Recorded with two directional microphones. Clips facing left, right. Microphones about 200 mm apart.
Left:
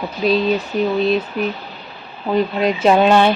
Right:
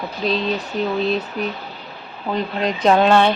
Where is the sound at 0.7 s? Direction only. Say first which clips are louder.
Left 2 dB; 10° left (ahead or behind).